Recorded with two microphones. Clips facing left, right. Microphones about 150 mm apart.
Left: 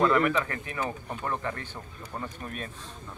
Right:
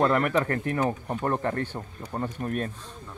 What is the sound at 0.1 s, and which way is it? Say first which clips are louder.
Speech: right 1 dB; 50° right (ahead or behind).